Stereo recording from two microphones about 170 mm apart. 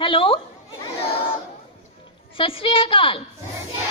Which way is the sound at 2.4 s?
30° left (ahead or behind).